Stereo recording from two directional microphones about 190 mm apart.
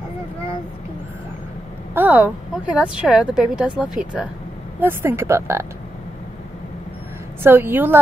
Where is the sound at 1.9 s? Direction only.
10° right (ahead or behind).